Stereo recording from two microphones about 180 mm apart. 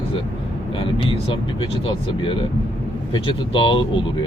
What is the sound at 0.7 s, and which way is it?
Speech, 30° left (ahead or behind).